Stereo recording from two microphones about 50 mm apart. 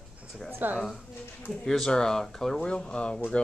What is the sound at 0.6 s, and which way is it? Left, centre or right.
Speech, right.